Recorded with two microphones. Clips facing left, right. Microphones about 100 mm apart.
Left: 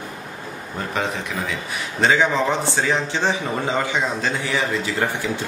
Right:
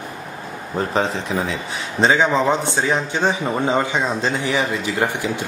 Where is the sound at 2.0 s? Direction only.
20° right (ahead or behind).